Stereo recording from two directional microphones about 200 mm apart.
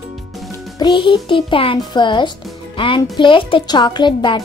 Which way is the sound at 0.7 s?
25° left (ahead or behind).